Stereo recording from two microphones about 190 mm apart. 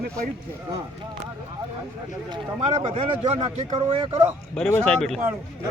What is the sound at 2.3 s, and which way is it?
A man's voice, 30° right (ahead or behind).